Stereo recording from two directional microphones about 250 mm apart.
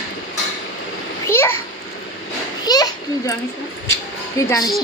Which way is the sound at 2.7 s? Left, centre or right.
Centre.